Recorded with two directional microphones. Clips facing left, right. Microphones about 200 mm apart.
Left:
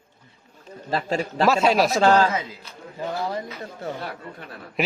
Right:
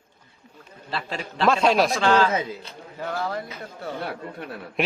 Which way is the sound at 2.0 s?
40° left (ahead or behind).